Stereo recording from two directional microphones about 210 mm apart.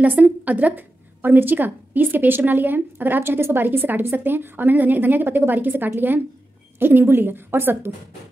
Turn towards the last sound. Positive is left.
turn(degrees=-10)  # may be behind; listen again after turning